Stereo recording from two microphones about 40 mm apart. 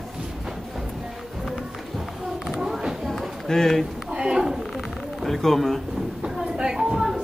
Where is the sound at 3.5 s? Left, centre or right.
Centre.